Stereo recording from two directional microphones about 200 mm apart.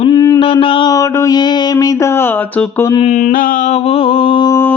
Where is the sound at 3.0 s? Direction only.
35° left (ahead or behind).